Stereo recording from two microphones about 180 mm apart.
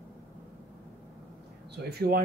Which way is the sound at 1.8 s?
60° right (ahead or behind).